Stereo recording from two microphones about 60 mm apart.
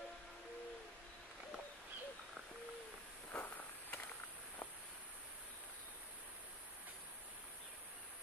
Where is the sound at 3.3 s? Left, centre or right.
Left.